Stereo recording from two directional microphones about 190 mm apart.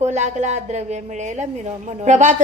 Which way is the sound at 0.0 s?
35° right (ahead or behind).